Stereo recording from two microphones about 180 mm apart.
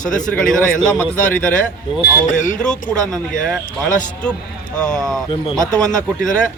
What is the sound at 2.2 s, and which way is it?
Speech, 45° left (ahead or behind).